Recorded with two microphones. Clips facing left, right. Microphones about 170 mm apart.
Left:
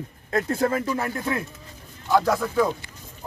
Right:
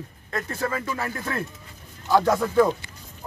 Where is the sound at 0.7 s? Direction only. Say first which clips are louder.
Left 4 dB; 15° left (ahead or behind).